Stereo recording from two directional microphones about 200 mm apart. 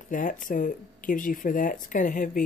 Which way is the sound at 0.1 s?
40° left (ahead or behind).